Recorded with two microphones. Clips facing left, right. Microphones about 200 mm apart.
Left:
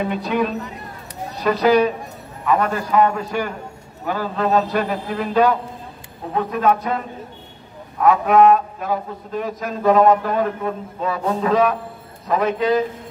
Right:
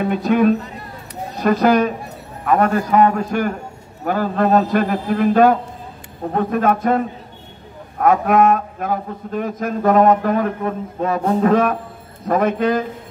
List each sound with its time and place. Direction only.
0.0 s a man's voice: 50° right (ahead or behind)